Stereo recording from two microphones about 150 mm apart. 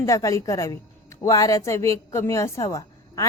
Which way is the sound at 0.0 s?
20° left (ahead or behind).